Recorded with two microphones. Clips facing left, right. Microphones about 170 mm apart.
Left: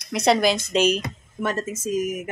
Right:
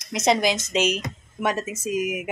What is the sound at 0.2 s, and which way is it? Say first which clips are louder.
A woman's voice: left 2 dB; 20° right (ahead or behind).